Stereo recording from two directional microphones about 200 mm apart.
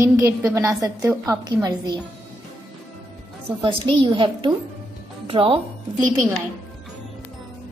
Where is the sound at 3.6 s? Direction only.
25° right (ahead or behind).